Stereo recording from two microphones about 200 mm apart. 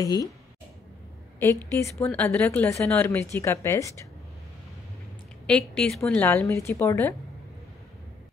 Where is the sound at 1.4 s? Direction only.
10° left (ahead or behind).